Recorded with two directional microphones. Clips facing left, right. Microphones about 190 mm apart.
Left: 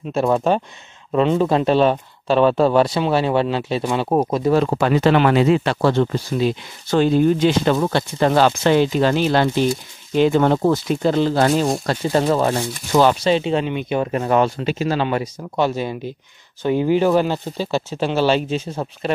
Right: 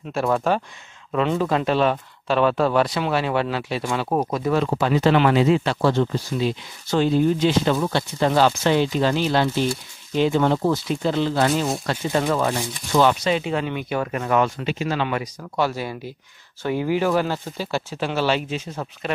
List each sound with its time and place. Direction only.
0.1 s speech: 25° left (ahead or behind)
4.6 s speech: 60° left (ahead or behind); by 19.1 s 30° left (ahead or behind)